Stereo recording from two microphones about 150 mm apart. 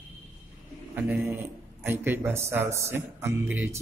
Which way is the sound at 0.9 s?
10° right (ahead or behind).